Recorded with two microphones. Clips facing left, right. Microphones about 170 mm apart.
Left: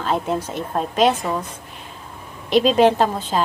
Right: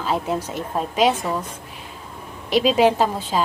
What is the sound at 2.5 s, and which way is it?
Speech, 5° right (ahead or behind).